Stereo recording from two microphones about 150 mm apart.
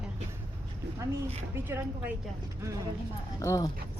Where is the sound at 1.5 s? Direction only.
15° right (ahead or behind).